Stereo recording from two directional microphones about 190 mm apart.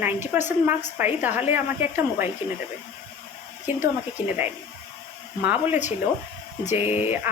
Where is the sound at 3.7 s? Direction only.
10° right (ahead or behind).